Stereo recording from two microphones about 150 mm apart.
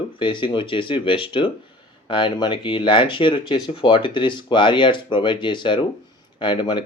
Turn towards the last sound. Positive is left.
turn(degrees=30)  # may be behind; listen again after turning